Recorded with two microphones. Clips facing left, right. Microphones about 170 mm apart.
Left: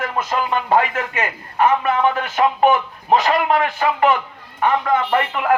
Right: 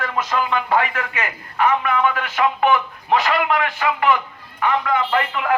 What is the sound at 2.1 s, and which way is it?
A man's voice, 45° left (ahead or behind).